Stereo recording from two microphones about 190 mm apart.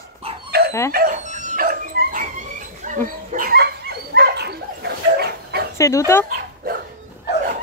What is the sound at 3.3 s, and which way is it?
Dog, 55° right (ahead or behind).